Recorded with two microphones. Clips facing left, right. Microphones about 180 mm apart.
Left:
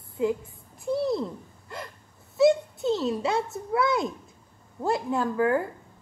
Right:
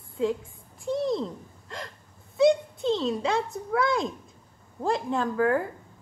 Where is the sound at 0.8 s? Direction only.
5° left (ahead or behind).